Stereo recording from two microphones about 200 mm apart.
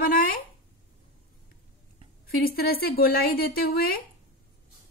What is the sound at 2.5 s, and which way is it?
A woman's voice, 50° left (ahead or behind).